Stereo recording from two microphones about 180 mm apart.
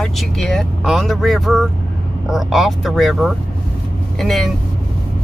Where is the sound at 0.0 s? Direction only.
Centre (ahead or behind).